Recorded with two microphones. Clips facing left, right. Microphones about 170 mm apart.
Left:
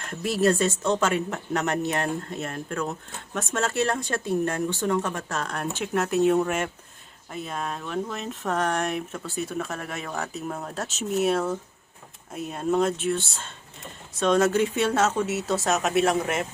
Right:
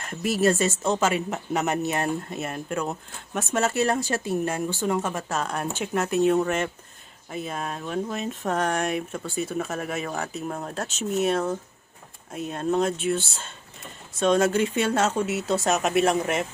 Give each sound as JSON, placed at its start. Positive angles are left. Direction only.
{"t": 0.1, "sound": "speech", "side_deg": -5}